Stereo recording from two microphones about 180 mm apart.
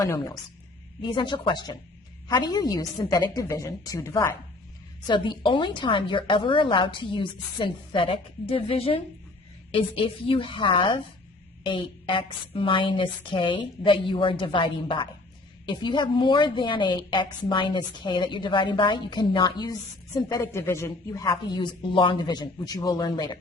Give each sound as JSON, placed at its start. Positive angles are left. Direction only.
{"t": 0.0, "sound": "a woman's voice", "side_deg": 20}
{"t": 5.0, "sound": "a woman's voice", "side_deg": 25}